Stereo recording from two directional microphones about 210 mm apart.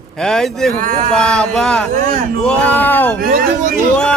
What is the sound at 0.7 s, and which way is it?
Speech, 40° right (ahead or behind).